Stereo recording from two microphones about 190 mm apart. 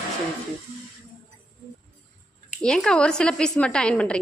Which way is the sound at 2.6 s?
5° left (ahead or behind).